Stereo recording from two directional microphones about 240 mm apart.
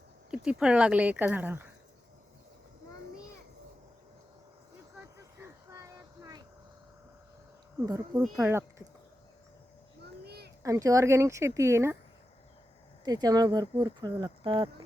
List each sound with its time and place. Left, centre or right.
0.3 s speech: centre
4.9 s a sound: centre
7.8 s speech: centre
10.2 s a sound: right
10.6 s speech: centre
13.1 s speech: centre